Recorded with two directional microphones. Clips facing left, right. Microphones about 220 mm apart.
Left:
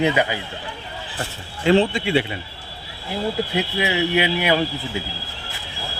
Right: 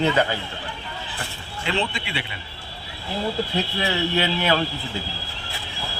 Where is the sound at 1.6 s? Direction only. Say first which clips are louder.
Left 10 dB; 45° left (ahead or behind).